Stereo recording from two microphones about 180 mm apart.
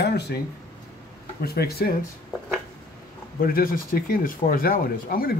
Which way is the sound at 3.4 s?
55° left (ahead or behind).